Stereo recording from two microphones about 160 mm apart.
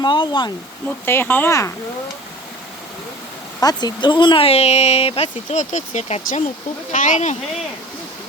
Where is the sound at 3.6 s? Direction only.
25° left (ahead or behind); by 7.4 s 50° left (ahead or behind).